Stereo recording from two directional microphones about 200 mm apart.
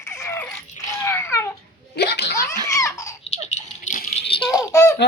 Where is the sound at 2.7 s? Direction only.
15° left (ahead or behind).